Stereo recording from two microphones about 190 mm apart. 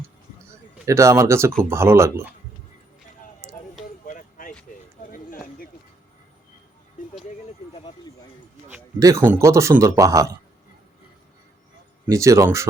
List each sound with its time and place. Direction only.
0.9 s a man's voice: 15° right (ahead or behind)
4.0 s a sound: 45° left (ahead or behind)
8.7 s a man's voice: 15° right (ahead or behind)
12.0 s a man's voice: 15° right (ahead or behind)